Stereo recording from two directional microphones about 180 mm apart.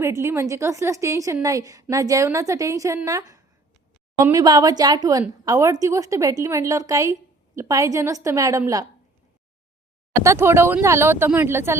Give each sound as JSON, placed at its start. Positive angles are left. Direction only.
{"t": 0.0, "sound": "a woman's voice", "side_deg": -15}
{"t": 10.2, "sound": "a woman's voice", "side_deg": -15}